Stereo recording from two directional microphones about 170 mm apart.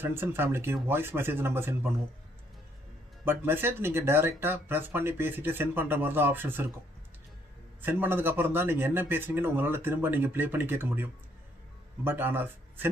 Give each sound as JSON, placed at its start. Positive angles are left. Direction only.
{"t": 0.0, "sound": "speech", "side_deg": -15}
{"t": 3.3, "sound": "speech", "side_deg": -10}
{"t": 7.8, "sound": "speech", "side_deg": -10}